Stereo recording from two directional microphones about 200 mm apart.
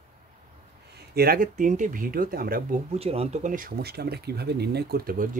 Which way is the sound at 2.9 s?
30° right (ahead or behind).